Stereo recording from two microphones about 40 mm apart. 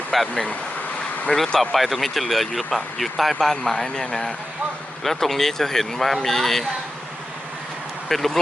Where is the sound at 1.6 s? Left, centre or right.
Centre.